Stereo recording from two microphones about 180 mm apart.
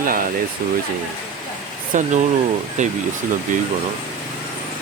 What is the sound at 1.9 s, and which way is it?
Speech, 45° right (ahead or behind).